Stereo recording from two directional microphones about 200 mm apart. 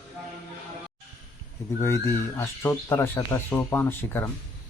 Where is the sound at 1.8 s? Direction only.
10° left (ahead or behind).